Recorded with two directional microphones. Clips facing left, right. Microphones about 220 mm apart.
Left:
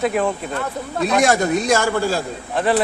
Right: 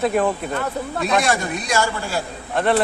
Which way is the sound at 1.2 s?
45° left (ahead or behind).